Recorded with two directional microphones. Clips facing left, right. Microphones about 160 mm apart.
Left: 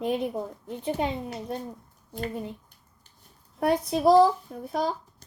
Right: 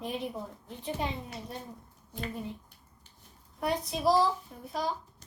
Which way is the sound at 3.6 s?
50° left (ahead or behind).